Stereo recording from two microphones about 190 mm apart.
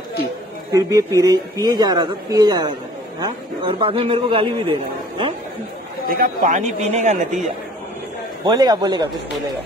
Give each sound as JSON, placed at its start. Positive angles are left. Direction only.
{"t": 0.7, "sound": "a man's voice", "side_deg": -20}
{"t": 6.0, "sound": "speech", "side_deg": -50}
{"t": 8.5, "sound": "a man's voice", "side_deg": -20}